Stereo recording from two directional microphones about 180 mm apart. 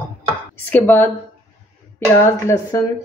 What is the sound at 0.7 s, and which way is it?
Speech, 10° left (ahead or behind).